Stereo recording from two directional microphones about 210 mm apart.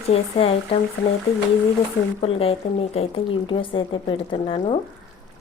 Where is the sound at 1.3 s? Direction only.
25° left (ahead or behind).